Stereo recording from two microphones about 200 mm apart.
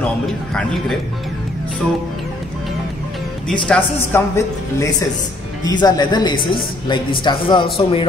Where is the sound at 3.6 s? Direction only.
5° left (ahead or behind).